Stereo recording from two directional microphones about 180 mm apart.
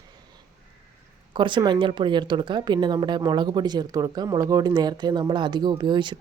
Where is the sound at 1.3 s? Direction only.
25° right (ahead or behind).